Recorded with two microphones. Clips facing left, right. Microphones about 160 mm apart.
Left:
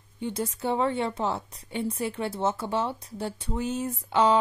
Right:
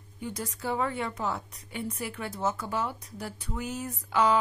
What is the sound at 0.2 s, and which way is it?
A woman's voice, 25° left (ahead or behind).